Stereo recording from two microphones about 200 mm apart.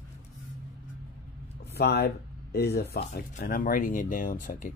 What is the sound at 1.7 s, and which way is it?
Speech, 50° left (ahead or behind).